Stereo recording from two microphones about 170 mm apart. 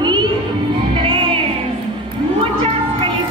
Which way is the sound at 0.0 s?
25° right (ahead or behind).